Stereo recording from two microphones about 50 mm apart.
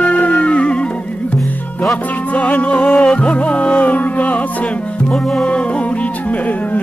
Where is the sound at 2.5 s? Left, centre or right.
Left.